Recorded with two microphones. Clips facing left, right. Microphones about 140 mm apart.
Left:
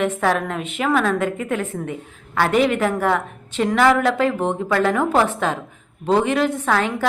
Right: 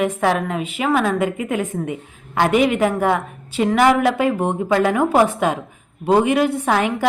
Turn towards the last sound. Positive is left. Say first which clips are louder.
# right 2 dB
turn(degrees=-15)  # may be behind; listen again after turning